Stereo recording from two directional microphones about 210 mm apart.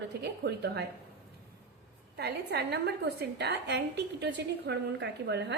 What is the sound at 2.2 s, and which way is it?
A woman's voice, 50° right (ahead or behind).